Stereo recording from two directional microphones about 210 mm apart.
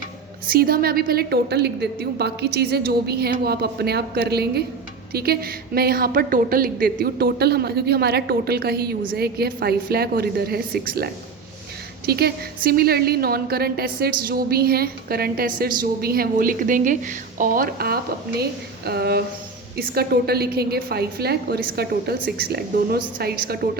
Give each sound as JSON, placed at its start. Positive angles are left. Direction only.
{"t": 0.5, "sound": "a woman's voice", "side_deg": -45}